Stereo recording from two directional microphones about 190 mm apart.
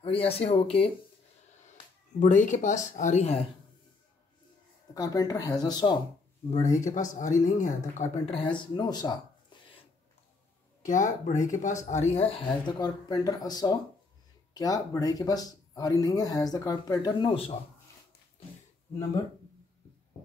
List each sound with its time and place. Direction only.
0.0 s speech: 30° left (ahead or behind)
2.1 s speech: 40° left (ahead or behind)
4.9 s speech: 20° left (ahead or behind)
6.5 s speech: 40° left (ahead or behind); by 9.2 s 20° left (ahead or behind)
10.8 s speech: 40° left (ahead or behind); by 17.6 s 25° left (ahead or behind)